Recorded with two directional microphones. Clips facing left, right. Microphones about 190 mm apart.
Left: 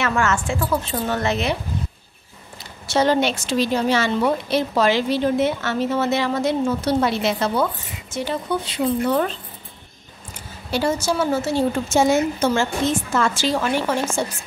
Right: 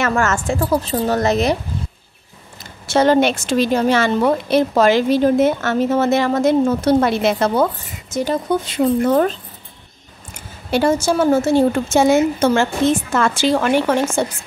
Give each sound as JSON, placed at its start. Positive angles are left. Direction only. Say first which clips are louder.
{"t": 0.0, "sound": "a woman's voice", "louder": "right 3 dB", "side_deg": -45}
{"t": 2.9, "sound": "speech", "louder": "right 5 dB", "side_deg": -55}
{"t": 10.7, "sound": "a woman's voice", "louder": "right 5 dB", "side_deg": -55}